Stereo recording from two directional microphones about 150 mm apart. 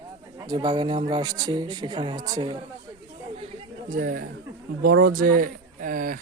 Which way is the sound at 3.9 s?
70° right (ahead or behind).